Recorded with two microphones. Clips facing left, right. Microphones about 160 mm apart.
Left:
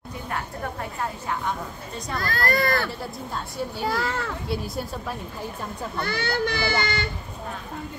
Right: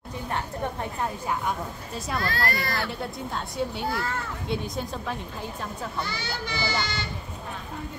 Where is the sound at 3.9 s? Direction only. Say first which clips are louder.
Left 3 dB; 90° left.